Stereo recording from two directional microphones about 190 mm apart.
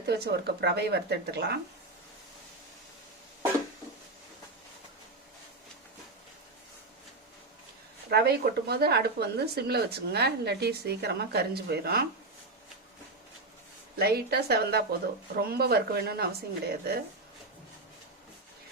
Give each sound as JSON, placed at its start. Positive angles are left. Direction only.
{"t": 0.1, "sound": "speech", "side_deg": -60}
{"t": 8.1, "sound": "speech", "side_deg": -55}
{"t": 14.0, "sound": "speech", "side_deg": -55}